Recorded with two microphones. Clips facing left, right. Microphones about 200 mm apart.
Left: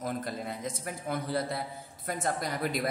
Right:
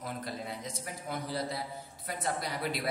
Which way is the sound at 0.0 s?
50° left (ahead or behind).